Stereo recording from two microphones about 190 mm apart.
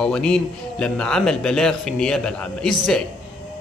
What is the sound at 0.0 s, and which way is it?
Speech, 5° left (ahead or behind).